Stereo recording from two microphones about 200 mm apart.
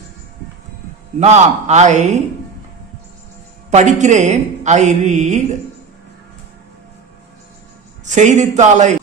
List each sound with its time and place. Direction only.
1.2 s a woman's voice: 35° right (ahead or behind)
3.7 s a woman's voice: 35° right (ahead or behind)
8.0 s a woman's voice: 35° right (ahead or behind)